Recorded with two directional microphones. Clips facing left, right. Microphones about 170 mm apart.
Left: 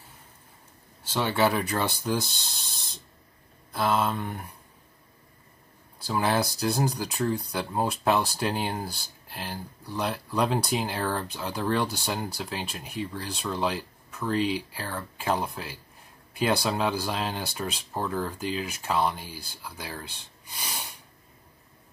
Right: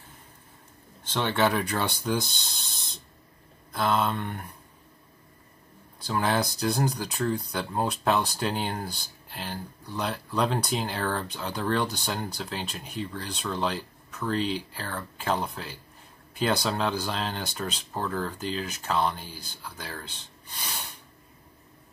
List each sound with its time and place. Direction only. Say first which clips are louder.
1.0 s speech: left 1 dB; 5° left (ahead or behind)
5.9 s speech: left 1 dB; 5° left (ahead or behind)